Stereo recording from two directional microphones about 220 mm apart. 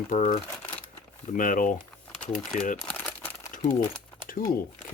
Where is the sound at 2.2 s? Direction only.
5° left (ahead or behind).